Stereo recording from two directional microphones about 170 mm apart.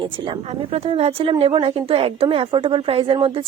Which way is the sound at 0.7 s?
35° right (ahead or behind).